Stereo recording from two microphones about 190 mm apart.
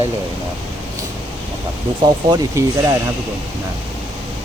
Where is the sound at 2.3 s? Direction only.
20° right (ahead or behind).